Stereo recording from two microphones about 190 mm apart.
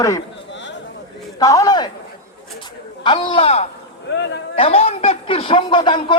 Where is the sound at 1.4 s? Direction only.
20° left (ahead or behind).